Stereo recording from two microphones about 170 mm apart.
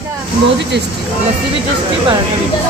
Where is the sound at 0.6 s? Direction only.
90° right.